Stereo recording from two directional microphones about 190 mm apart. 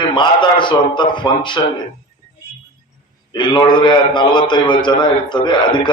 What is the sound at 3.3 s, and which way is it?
A man's voice, 25° left (ahead or behind).